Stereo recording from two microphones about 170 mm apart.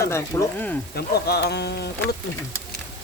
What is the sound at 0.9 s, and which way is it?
Speech, 70° left (ahead or behind).